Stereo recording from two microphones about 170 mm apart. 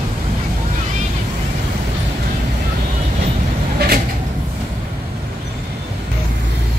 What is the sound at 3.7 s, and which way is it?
Cupboard open or close, 65° right (ahead or behind).